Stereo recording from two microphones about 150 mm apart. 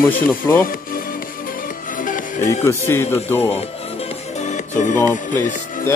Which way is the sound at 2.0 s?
60° left (ahead or behind).